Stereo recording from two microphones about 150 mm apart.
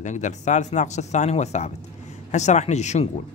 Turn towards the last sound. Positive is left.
turn(degrees=50)  # may be behind; listen again after turning